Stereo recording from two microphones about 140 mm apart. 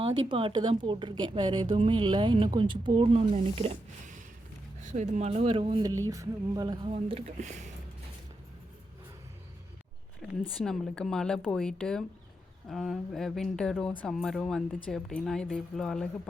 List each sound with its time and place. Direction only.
0.0 s speech: 40° right (ahead or behind)
4.8 s speech: 60° right (ahead or behind); by 5.8 s 40° right (ahead or behind)
5.8 s a sound: 25° right (ahead or behind)
6.9 s speech: 55° right (ahead or behind)
10.2 s a woman's voice: 5° left (ahead or behind)